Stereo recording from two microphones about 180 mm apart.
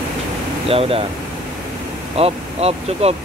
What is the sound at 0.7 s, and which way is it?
Speech, 30° right (ahead or behind).